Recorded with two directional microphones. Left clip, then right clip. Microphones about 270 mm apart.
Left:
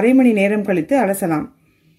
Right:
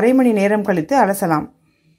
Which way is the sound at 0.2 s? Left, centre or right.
Right.